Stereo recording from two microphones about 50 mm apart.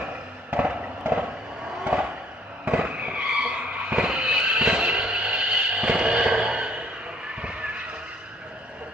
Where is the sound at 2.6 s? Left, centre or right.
Right.